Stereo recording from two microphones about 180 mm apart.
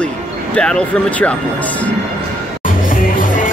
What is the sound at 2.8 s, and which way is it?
Music, 50° left (ahead or behind).